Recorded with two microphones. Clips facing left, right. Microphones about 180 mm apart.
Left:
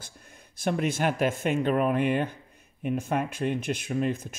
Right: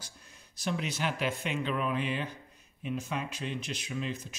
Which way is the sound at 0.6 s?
50° left (ahead or behind).